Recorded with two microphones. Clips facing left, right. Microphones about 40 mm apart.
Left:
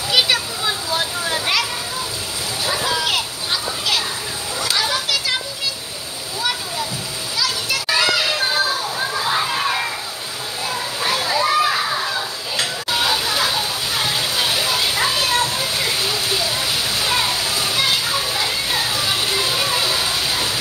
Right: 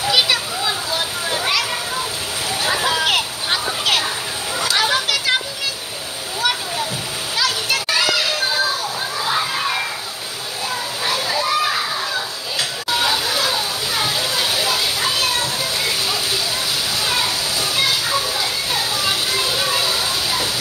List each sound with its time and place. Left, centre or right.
0.1 s children playing: centre
2.6 s a sound: right
4.7 s children playing: right
7.3 s children playing: right
8.0 s music: centre
9.2 s children playing: centre
11.1 s children playing: centre
17.0 s a sound: centre